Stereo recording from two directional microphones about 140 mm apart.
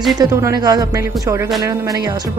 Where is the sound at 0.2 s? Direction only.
25° right (ahead or behind).